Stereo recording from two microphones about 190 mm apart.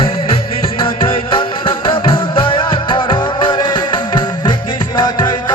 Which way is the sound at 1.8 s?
25° left (ahead or behind).